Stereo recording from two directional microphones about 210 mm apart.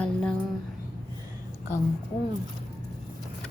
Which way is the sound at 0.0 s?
5° left (ahead or behind).